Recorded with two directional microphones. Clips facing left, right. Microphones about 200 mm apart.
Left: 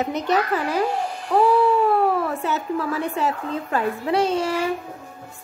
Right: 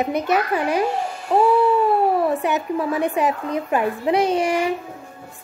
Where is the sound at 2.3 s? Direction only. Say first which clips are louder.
Right 4 dB; 15° right (ahead or behind).